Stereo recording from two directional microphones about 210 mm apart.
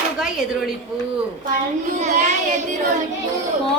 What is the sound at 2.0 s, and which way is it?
Speech, 35° right (ahead or behind).